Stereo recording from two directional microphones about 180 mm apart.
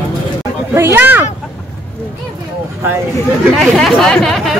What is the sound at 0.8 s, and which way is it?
Speech, 10° right (ahead or behind).